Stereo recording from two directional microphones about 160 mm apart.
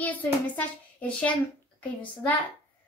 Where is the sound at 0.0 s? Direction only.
10° left (ahead or behind).